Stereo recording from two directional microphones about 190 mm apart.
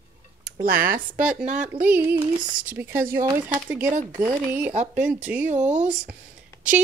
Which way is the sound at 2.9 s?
50° right (ahead or behind).